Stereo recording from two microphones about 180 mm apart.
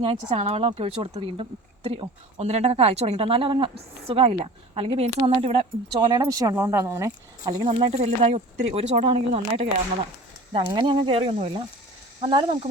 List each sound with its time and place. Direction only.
0.0 s speech: 30° right (ahead or behind)
10.7 s speech: 25° right (ahead or behind)